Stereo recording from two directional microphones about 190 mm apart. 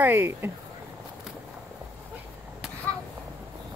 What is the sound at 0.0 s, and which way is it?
Speech, 10° right (ahead or behind).